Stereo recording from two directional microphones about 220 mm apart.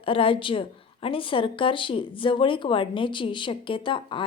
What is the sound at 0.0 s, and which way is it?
A woman's voice, 25° left (ahead or behind).